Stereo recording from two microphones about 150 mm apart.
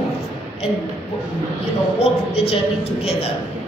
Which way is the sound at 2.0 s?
45° left (ahead or behind).